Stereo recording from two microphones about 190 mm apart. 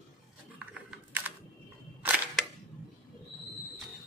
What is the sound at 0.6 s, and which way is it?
Typing, 10° right (ahead or behind).